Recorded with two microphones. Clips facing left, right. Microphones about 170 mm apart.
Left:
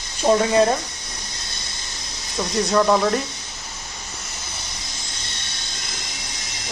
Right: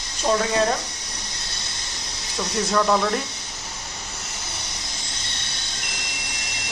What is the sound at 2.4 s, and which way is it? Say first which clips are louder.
Speech: left 3 dB; 5° left (ahead or behind).